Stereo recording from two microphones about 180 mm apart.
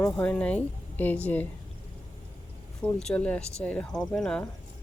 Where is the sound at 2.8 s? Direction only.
5° left (ahead or behind).